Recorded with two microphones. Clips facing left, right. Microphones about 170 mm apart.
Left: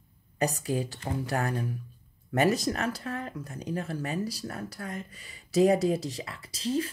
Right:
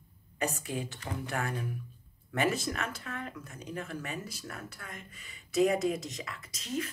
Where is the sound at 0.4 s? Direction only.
35° left (ahead or behind).